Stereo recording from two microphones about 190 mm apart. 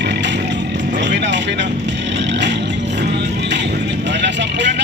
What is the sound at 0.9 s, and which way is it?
Vehicle, 65° right (ahead or behind).